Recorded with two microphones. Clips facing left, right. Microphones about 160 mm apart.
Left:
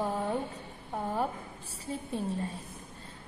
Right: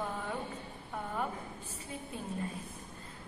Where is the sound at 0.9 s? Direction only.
30° left (ahead or behind).